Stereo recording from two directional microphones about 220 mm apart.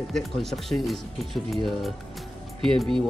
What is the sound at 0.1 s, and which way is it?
Speech, centre (ahead or behind).